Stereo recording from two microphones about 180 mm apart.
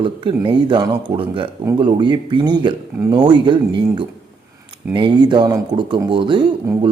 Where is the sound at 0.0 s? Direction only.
30° right (ahead or behind).